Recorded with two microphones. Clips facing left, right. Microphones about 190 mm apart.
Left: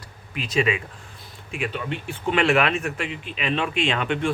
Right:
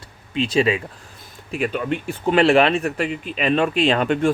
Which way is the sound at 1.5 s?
45° right (ahead or behind).